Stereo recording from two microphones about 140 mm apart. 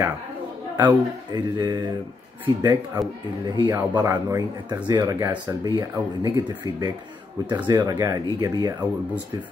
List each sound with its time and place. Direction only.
0.7 s a man's voice: 30° right (ahead or behind)